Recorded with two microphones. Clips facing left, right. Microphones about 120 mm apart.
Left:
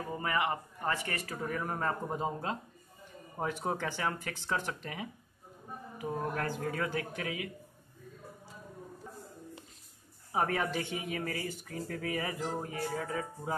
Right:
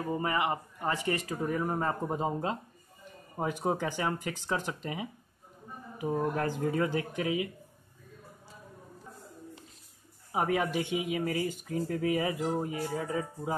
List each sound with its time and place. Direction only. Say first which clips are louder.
0.1 s speech: right 2 dB; 25° right (ahead or behind)
10.3 s speech: right 3 dB; 15° right (ahead or behind)